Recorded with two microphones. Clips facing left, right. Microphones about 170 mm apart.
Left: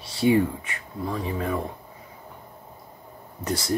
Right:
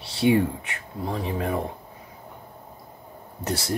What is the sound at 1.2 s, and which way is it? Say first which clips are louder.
Speech: right 2 dB; 55° right (ahead or behind).